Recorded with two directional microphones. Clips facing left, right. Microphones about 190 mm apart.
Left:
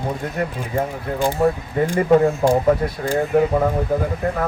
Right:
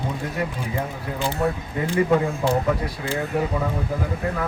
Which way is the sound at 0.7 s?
50° left (ahead or behind).